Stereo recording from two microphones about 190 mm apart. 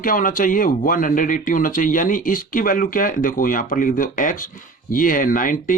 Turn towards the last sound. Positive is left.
turn(degrees=45)  # may be behind; listen again after turning